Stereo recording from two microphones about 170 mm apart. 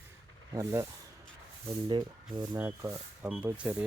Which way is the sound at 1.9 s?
25° right (ahead or behind).